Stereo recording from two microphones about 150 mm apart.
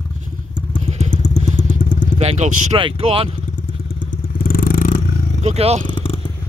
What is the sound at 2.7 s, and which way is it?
Speech, 35° right (ahead or behind).